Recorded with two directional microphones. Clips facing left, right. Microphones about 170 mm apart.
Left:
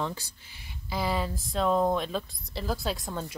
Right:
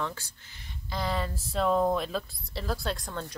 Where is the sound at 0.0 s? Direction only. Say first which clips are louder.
Left 2 dB; 15° left (ahead or behind).